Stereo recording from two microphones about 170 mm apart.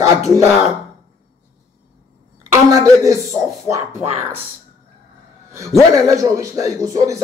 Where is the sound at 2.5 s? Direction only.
20° right (ahead or behind).